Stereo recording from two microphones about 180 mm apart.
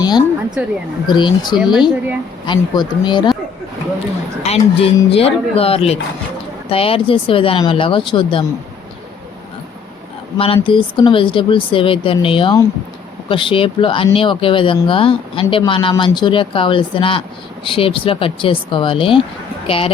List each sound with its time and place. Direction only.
0.0 s a woman's voice: 25° left (ahead or behind)
0.6 s speech: 10° right (ahead or behind)
1.0 s speech: 25° left (ahead or behind)
1.5 s speech: centre (ahead or behind)
2.5 s speech: 25° left (ahead or behind)
4.4 s speech: 35° left (ahead or behind)
10.3 s speech: 30° left (ahead or behind)